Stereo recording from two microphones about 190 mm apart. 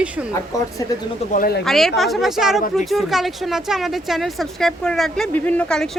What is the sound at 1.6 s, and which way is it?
Speech, centre (ahead or behind).